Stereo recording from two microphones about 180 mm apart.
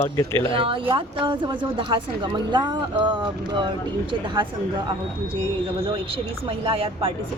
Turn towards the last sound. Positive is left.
turn(degrees=-30)  # may be behind; listen again after turning